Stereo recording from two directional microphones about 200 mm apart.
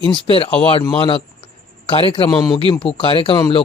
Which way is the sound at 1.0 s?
25° left (ahead or behind).